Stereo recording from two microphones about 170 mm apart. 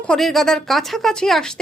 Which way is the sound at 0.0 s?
5° left (ahead or behind).